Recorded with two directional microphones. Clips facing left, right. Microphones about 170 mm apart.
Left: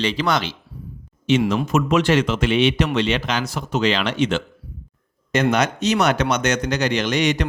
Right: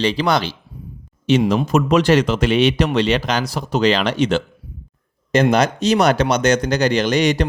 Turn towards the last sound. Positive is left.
turn(degrees=-35)  # may be behind; listen again after turning